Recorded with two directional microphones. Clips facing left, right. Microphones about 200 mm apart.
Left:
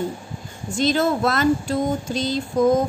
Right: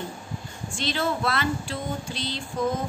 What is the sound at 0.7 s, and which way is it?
A woman's voice, 45° left (ahead or behind).